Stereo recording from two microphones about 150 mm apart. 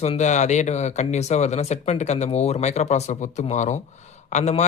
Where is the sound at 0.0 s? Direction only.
50° left (ahead or behind).